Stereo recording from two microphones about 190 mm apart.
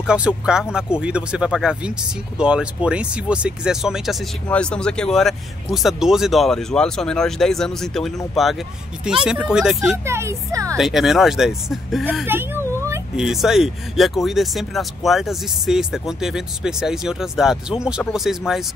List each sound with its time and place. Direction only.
0.0 s speech: 5° right (ahead or behind)
10.0 s speech: 15° right (ahead or behind)
10.8 s speech: centre (ahead or behind)
13.1 s speech: centre (ahead or behind)